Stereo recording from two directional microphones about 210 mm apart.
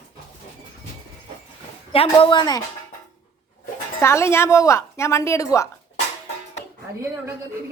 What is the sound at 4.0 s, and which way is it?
A woman's voice, 10° left (ahead or behind).